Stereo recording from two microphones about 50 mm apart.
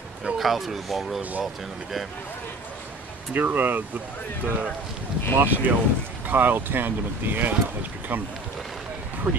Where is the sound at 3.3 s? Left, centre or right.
Right.